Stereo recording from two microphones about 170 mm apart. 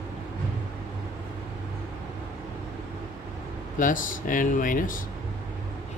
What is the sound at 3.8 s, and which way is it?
Speech, 50° left (ahead or behind).